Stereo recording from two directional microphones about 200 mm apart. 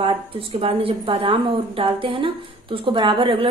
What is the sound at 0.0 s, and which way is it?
A woman's voice, 25° right (ahead or behind).